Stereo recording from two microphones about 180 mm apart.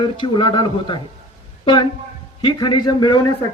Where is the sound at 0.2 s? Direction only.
25° left (ahead or behind).